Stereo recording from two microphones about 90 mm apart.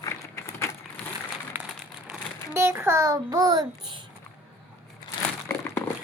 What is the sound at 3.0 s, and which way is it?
Speech, 40° right (ahead or behind).